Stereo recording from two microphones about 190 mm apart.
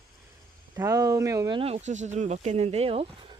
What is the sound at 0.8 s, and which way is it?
Speech, 15° right (ahead or behind).